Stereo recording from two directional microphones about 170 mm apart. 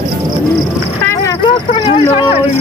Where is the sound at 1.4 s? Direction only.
35° left (ahead or behind).